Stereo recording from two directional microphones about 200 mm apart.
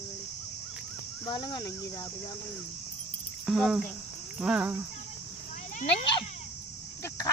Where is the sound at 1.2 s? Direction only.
20° left (ahead or behind).